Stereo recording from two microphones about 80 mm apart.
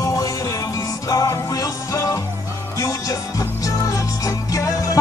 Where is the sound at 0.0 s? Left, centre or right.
Left.